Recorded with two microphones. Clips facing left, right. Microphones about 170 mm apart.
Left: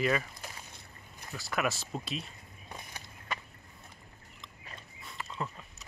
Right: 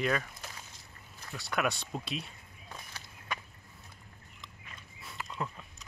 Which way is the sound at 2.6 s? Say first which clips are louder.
Left 2 dB; 20° left (ahead or behind).